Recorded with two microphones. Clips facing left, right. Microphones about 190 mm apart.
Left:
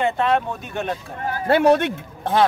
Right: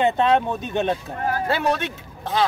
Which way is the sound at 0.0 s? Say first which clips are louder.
Right 2 dB; 20° right (ahead or behind).